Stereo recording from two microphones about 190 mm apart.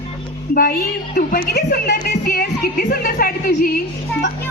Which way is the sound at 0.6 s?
50° left (ahead or behind).